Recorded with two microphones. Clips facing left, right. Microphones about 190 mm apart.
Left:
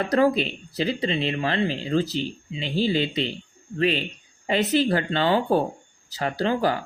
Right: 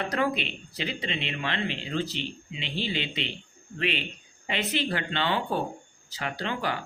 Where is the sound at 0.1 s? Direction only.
35° left (ahead or behind).